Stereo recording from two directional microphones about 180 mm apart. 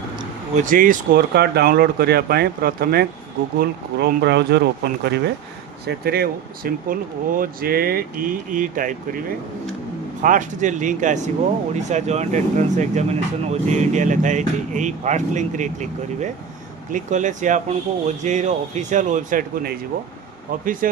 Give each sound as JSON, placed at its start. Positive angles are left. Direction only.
{"t": 0.5, "sound": "speech", "side_deg": -45}